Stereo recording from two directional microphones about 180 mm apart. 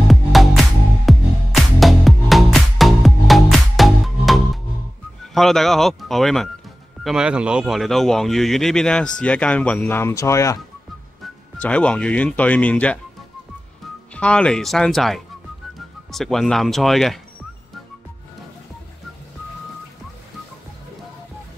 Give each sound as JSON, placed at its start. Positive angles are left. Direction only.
{"t": 0.1, "sound": "music", "side_deg": 0}
{"t": 5.3, "sound": "speech", "side_deg": 0}
{"t": 14.1, "sound": "speech", "side_deg": 5}